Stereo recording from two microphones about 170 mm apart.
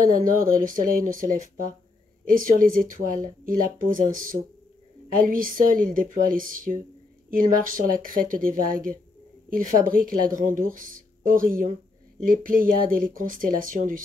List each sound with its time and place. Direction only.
0.1 s a woman's voice: 55° right (ahead or behind)